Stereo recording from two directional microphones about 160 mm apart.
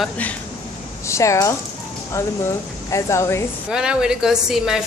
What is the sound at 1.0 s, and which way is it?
Speech, 20° left (ahead or behind).